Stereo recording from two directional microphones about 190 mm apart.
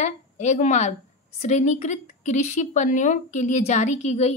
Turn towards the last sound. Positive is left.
turn(degrees=35)  # may be behind; listen again after turning